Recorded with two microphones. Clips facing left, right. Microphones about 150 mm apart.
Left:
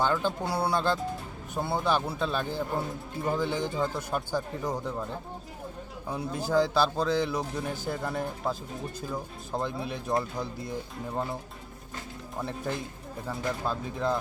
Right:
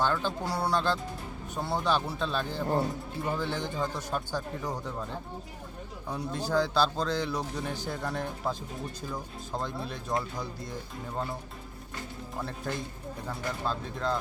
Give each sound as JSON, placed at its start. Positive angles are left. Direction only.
{"t": 0.0, "sound": "speech", "side_deg": 15}
{"t": 6.1, "sound": "speech", "side_deg": 10}
{"t": 12.4, "sound": "speech", "side_deg": 15}